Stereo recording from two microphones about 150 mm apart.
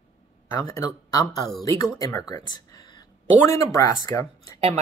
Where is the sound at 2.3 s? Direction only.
25° left (ahead or behind).